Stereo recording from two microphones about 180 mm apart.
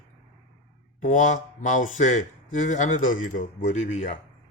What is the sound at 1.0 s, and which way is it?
Speech, 45° left (ahead or behind).